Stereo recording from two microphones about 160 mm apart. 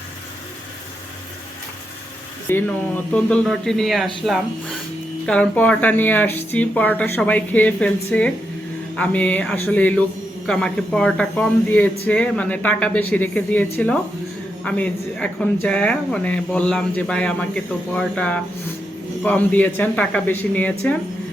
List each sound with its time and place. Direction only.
2.5 s speech: 10° left (ahead or behind)